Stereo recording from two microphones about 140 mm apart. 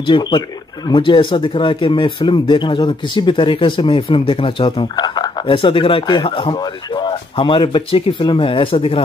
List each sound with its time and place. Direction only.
0.0 s speech: 35° left (ahead or behind)